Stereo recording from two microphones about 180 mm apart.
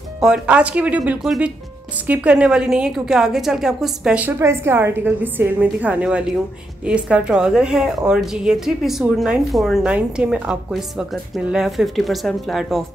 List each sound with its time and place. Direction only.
0.2 s a woman's voice: 5° right (ahead or behind)